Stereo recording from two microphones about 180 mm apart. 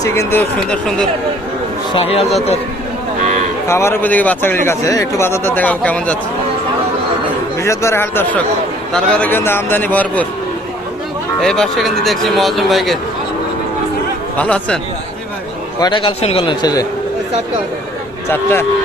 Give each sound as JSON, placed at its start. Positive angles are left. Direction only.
{"t": 0.0, "sound": "speech", "side_deg": 15}
{"t": 1.9, "sound": "speech", "side_deg": 30}
{"t": 3.2, "sound": "cattle", "side_deg": -45}
{"t": 3.7, "sound": "speech", "side_deg": 15}
{"t": 7.6, "sound": "speech", "side_deg": 15}
{"t": 11.3, "sound": "speech", "side_deg": 5}
{"t": 14.3, "sound": "speech", "side_deg": 5}
{"t": 15.8, "sound": "a man's voice", "side_deg": 30}